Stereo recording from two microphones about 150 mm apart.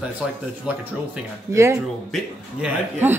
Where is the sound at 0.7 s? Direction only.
5° right (ahead or behind).